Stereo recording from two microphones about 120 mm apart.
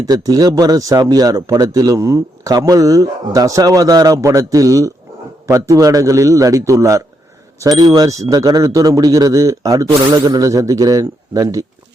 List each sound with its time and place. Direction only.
0.0 s speech: 35° right (ahead or behind)